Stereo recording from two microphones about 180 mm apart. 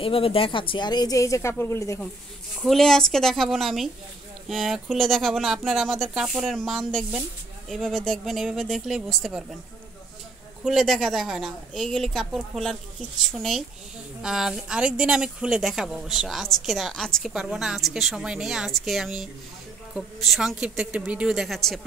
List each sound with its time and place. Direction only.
0.0 s speech: 30° left (ahead or behind); by 2.0 s 15° left (ahead or behind)
2.6 s speech: centre (ahead or behind)
10.6 s speech: centre (ahead or behind)